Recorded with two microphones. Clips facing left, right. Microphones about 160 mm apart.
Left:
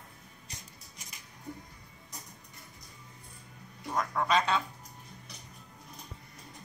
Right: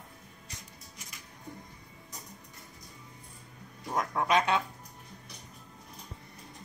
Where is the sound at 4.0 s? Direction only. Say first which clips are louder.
Right 1 dB; 15° right (ahead or behind).